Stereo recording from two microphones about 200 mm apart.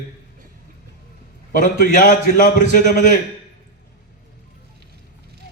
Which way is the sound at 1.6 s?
45° left (ahead or behind).